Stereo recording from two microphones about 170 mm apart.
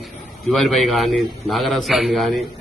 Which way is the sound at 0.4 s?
Centre (ahead or behind).